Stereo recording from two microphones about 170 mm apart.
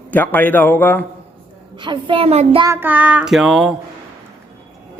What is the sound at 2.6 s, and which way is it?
Child singing, 15° right (ahead or behind).